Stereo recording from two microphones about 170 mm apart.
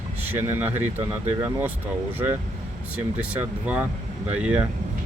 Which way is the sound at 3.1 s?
10° right (ahead or behind).